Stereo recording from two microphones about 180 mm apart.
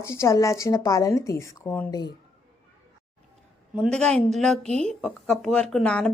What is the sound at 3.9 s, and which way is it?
Speech, 5° left (ahead or behind).